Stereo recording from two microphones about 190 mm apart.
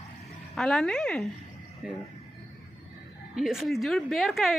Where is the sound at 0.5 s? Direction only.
5° left (ahead or behind).